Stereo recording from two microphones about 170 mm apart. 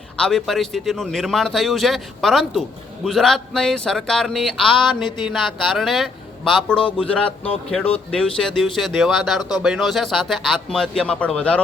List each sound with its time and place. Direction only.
0.2 s speech: centre (ahead or behind)
5.0 s speech: 25° left (ahead or behind)
5.3 s speech: centre (ahead or behind)